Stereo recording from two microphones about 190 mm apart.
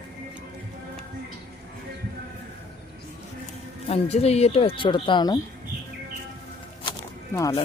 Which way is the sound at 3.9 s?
35° left (ahead or behind).